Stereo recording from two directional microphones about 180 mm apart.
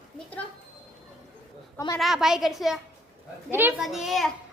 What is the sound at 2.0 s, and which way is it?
A child's voice, centre (ahead or behind).